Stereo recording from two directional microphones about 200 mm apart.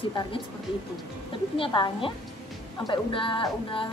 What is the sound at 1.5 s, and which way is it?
A woman's voice, 25° left (ahead or behind).